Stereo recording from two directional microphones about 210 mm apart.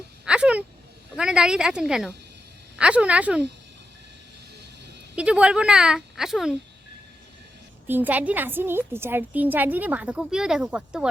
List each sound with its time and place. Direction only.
0.3 s a sound: 5° right (ahead or behind)
1.1 s speech: 5° right (ahead or behind)
5.1 s speech: 5° right (ahead or behind)
7.9 s a woman's voice: 10° right (ahead or behind)